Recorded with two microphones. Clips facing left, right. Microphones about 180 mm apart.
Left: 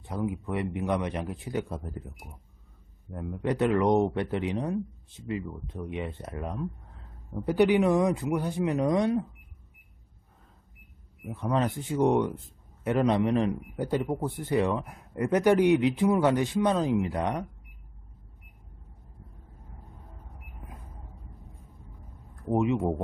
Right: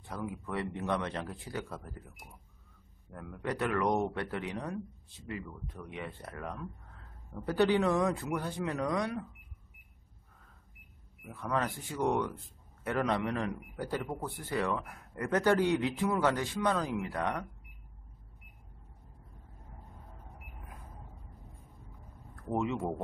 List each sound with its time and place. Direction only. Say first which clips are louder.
0.0 s speech: left 7 dB; 20° left (ahead or behind)
11.2 s speech: left 6 dB; 20° left (ahead or behind)
22.3 s speech: left 7 dB; 20° left (ahead or behind)